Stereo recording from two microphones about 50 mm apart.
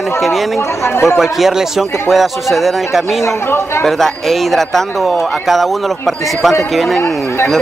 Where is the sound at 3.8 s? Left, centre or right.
Centre.